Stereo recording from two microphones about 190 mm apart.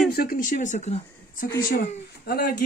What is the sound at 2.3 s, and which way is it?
Speech, 55° left (ahead or behind).